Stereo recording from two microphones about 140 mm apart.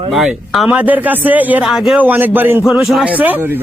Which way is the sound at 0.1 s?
Centre (ahead or behind).